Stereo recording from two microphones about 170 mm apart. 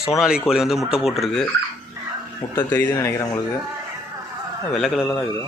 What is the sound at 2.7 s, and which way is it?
Speech, 15° left (ahead or behind).